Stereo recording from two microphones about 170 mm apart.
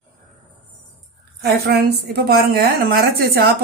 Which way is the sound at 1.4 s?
65° right (ahead or behind).